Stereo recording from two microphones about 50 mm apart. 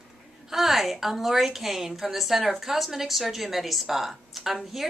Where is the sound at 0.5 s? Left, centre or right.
Centre.